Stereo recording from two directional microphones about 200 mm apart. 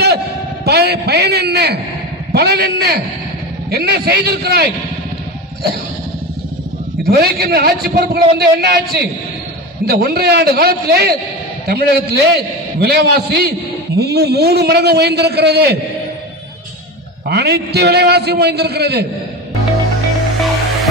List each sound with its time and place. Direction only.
0.7 s a man's voice: 55° right (ahead or behind)
7.1 s a man's voice: 50° right (ahead or behind)
17.3 s a man's voice: 55° right (ahead or behind)